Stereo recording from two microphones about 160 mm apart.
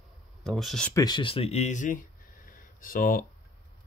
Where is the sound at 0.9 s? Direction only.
25° left (ahead or behind); by 3.2 s 60° left (ahead or behind).